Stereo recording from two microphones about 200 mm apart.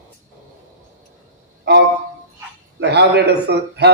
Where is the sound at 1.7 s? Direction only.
55° right (ahead or behind).